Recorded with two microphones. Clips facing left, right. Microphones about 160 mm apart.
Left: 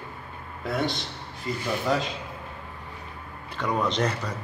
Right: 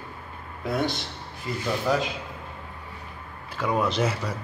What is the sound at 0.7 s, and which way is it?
Speech, centre (ahead or behind).